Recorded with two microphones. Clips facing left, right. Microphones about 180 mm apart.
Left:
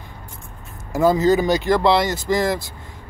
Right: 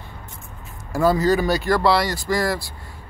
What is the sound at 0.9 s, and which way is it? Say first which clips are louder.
Speech: left 2 dB; 20° left (ahead or behind).